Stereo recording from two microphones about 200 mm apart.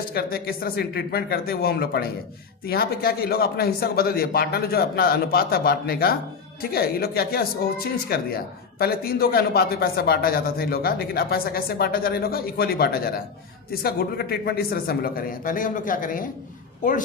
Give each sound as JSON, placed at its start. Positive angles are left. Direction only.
{"t": 0.1, "sound": "a man's voice", "side_deg": 50}